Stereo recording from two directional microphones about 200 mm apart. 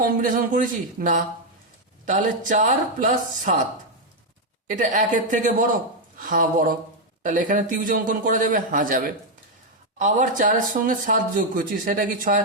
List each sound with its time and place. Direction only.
0.0 s speech: 40° right (ahead or behind)
4.7 s speech: 40° right (ahead or behind)